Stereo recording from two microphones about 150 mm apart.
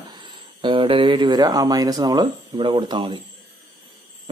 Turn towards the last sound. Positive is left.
turn(degrees=-30)  # may be behind; listen again after turning